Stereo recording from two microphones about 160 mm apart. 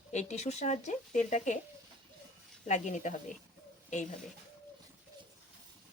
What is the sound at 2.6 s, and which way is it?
Speech, 50° left (ahead or behind).